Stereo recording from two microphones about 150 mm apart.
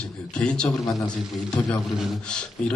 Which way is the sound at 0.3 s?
5° left (ahead or behind).